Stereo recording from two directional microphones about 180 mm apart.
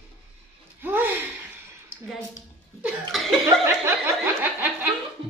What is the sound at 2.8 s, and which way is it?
Cough, centre (ahead or behind).